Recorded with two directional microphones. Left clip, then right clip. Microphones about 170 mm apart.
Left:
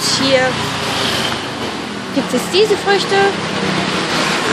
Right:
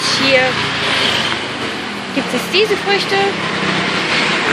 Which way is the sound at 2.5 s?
15° left (ahead or behind).